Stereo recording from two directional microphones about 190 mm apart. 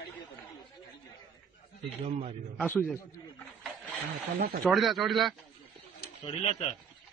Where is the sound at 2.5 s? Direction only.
10° left (ahead or behind).